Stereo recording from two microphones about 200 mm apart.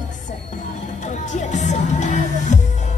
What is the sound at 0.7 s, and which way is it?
Music, 40° left (ahead or behind).